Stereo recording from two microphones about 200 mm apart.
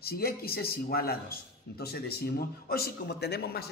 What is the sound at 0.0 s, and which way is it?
A man's voice, 50° left (ahead or behind).